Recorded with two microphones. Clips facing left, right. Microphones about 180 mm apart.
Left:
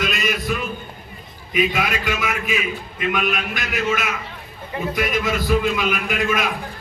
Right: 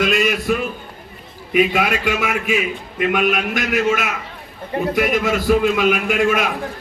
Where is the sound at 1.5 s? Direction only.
60° right (ahead or behind).